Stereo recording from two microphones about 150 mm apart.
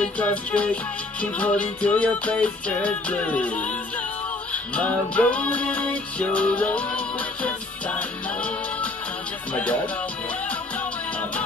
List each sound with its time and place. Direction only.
0.0 s music: 10° left (ahead or behind)
4.7 s music: 10° left (ahead or behind)
9.5 s music: 10° left (ahead or behind)